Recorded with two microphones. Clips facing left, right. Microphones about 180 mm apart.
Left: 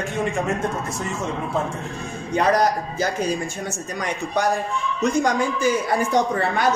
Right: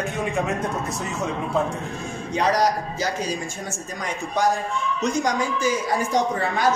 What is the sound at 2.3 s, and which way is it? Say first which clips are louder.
A man's voice: left 2 dB; 55° left (ahead or behind).